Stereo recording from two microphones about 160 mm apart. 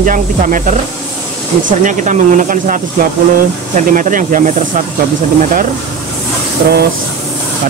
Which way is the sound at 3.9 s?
55° right (ahead or behind).